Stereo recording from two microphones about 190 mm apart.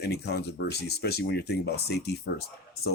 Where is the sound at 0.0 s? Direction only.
60° left (ahead or behind).